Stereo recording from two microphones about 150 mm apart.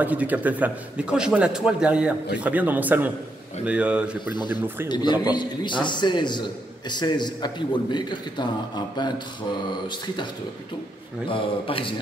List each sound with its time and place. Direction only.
0.0 s a man's voice: 10° right (ahead or behind)
4.8 s a man's voice: 30° left (ahead or behind)
11.2 s a man's voice: 35° left (ahead or behind)